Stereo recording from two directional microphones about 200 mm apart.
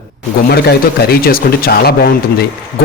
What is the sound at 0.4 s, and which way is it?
A man's voice, 50° left (ahead or behind).